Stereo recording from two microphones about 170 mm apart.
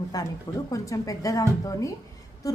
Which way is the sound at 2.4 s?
20° left (ahead or behind).